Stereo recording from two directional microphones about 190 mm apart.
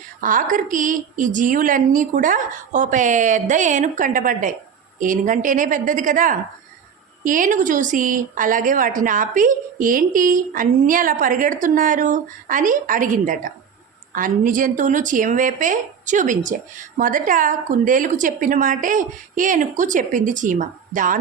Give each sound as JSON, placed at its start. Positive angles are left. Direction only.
{"t": 0.2, "sound": "a woman's voice", "side_deg": -45}